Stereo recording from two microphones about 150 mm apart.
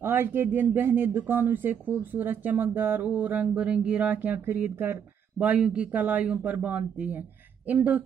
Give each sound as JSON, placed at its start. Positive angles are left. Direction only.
{"t": 0.0, "sound": "speech", "side_deg": -15}